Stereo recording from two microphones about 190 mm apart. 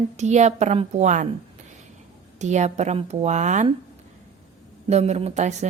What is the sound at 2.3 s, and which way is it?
Speech, 40° right (ahead or behind).